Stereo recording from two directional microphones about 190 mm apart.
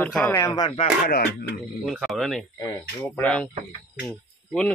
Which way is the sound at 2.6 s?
15° left (ahead or behind).